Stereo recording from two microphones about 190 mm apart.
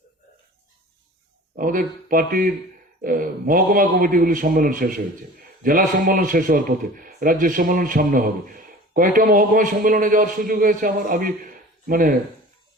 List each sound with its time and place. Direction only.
1.5 s speech: 45° right (ahead or behind)